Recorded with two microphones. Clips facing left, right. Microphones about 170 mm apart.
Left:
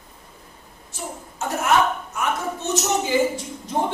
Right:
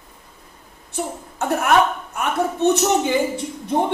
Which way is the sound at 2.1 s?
60° right (ahead or behind).